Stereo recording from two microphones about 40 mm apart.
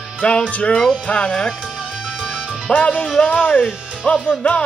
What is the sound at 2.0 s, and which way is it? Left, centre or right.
Music, left.